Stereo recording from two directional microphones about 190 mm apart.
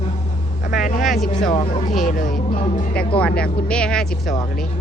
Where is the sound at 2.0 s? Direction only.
45° left (ahead or behind).